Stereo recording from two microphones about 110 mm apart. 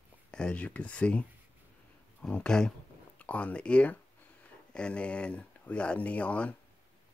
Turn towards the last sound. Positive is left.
turn(degrees=10)  # may be behind; listen again after turning